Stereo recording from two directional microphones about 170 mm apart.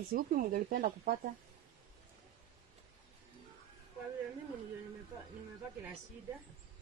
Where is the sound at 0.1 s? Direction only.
60° right (ahead or behind).